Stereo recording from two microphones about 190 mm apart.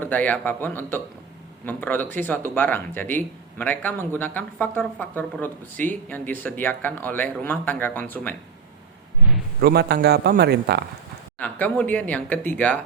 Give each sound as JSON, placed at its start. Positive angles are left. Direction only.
{"t": 0.0, "sound": "speech", "side_deg": 10}
{"t": 9.6, "sound": "a man's voice", "side_deg": -55}
{"t": 11.3, "sound": "speech", "side_deg": 10}